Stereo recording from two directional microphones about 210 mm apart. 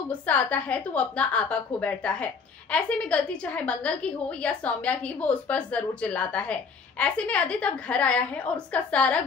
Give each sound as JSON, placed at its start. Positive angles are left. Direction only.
{"t": 0.1, "sound": "a woman's voice", "side_deg": 5}